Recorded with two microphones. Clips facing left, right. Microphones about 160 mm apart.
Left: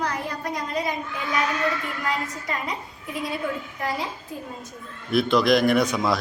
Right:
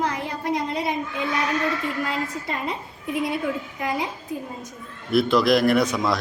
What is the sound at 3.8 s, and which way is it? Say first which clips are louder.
Speech: right 2 dB; 20° right (ahead or behind).